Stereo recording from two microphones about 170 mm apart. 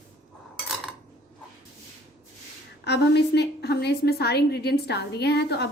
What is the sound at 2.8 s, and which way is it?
A woman's voice, 80° left.